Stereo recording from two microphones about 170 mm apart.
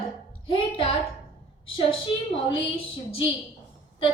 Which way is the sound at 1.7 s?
30° left (ahead or behind).